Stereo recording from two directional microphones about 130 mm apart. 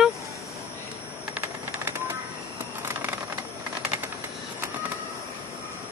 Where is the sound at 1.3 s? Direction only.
20° right (ahead or behind).